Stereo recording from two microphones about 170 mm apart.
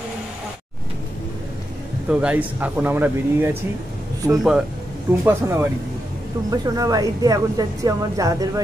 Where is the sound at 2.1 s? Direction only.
5° right (ahead or behind).